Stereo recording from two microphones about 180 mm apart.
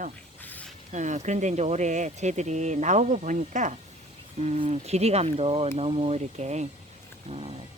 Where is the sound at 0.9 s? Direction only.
40° right (ahead or behind).